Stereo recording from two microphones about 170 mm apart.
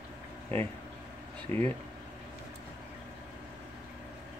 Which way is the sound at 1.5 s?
15° left (ahead or behind).